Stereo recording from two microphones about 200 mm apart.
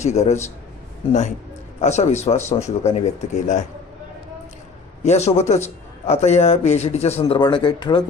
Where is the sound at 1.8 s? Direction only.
35° left (ahead or behind).